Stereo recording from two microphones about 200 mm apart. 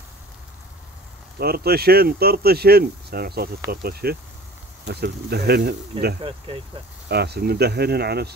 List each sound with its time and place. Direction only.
1.4 s speech: 50° right (ahead or behind)
6.2 s speech: 25° right (ahead or behind)
7.1 s speech: 55° right (ahead or behind)